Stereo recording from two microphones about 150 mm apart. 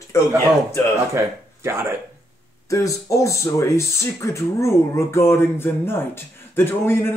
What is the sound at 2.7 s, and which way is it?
Speech, 20° left (ahead or behind).